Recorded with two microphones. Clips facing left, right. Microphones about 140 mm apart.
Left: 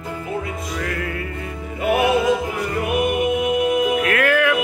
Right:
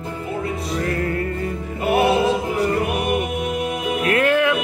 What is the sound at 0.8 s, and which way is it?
Music, 35° right (ahead or behind).